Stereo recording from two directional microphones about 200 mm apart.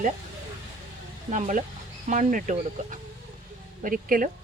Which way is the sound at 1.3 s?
40° right (ahead or behind).